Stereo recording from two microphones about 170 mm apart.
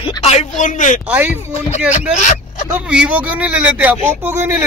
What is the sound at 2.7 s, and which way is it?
Speech, 5° right (ahead or behind).